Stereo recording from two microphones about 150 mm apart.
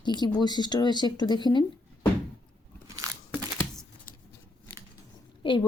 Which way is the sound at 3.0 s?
25° right (ahead or behind).